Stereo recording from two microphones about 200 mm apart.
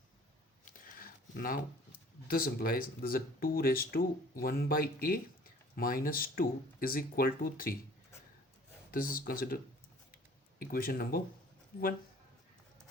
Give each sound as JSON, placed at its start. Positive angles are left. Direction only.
{"t": 0.6, "sound": "a sound", "side_deg": 45}
{"t": 2.2, "sound": "speech", "side_deg": 50}
{"t": 8.9, "sound": "speech", "side_deg": 45}
{"t": 10.6, "sound": "speech", "side_deg": 45}